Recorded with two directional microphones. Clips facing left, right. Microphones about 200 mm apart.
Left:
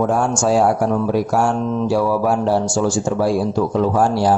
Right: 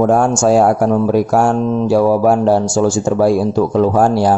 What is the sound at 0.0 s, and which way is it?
Speech, 50° right (ahead or behind).